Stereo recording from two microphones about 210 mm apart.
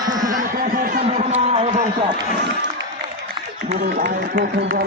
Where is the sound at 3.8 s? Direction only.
50° right (ahead or behind).